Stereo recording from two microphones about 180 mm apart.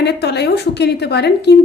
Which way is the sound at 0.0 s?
65° left (ahead or behind).